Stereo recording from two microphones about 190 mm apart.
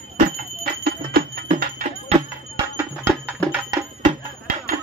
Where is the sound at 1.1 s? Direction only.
45° right (ahead or behind).